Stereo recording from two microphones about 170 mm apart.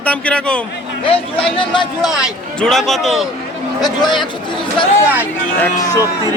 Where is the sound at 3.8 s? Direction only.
25° left (ahead or behind).